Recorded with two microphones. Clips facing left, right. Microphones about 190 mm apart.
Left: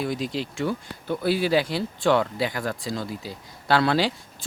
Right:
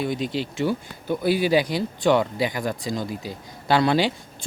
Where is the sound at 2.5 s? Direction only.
Centre (ahead or behind).